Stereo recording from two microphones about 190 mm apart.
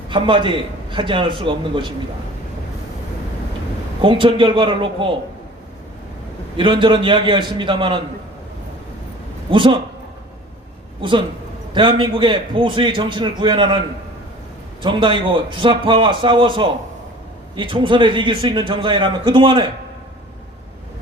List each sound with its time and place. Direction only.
0.1 s a man's voice: 25° right (ahead or behind)
4.0 s a man's voice: 25° right (ahead or behind)
6.6 s a man's voice: 25° right (ahead or behind)
9.5 s a man's voice: 25° right (ahead or behind)
11.7 s a man's voice: 25° right (ahead or behind)